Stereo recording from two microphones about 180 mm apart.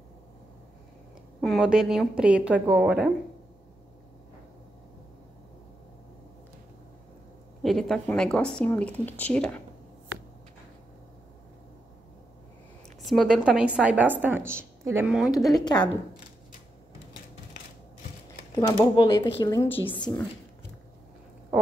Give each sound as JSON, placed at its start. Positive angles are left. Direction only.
{"t": 1.4, "sound": "a woman's voice", "side_deg": 0}
{"t": 7.6, "sound": "a woman's voice", "side_deg": 0}
{"t": 13.0, "sound": "a woman's voice", "side_deg": 0}
{"t": 15.1, "sound": "a woman's voice", "side_deg": 0}
{"t": 15.6, "sound": "speech", "side_deg": 25}
{"t": 19.0, "sound": "speech", "side_deg": 25}